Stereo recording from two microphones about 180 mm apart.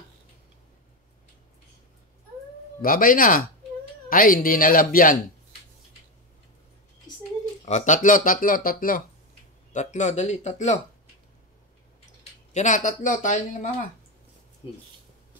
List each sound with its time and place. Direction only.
2.8 s speech: 50° left (ahead or behind)
7.1 s a sound: 20° left (ahead or behind)
7.6 s speech: 40° left (ahead or behind)
12.5 s speech: 45° left (ahead or behind)
14.6 s speech: 30° left (ahead or behind)